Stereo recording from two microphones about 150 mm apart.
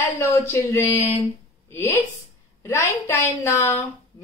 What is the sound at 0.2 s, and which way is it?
Speech, 10° left (ahead or behind).